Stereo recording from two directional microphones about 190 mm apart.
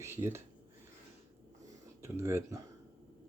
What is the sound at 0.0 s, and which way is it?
Speech, 15° right (ahead or behind).